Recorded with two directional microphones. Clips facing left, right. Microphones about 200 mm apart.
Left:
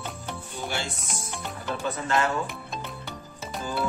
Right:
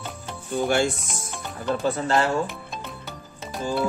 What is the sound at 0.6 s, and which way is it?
Speech, 50° right (ahead or behind).